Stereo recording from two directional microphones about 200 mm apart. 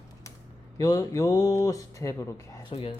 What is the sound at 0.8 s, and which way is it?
Speech, 15° left (ahead or behind).